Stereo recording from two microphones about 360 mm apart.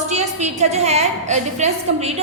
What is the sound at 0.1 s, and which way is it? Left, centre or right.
A woman's voice, centre.